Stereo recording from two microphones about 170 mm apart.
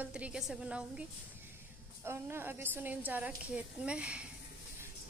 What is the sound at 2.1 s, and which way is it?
A woman's voice, 15° right (ahead or behind).